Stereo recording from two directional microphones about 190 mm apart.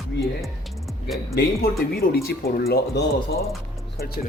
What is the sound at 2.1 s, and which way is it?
Speech, 55° left (ahead or behind).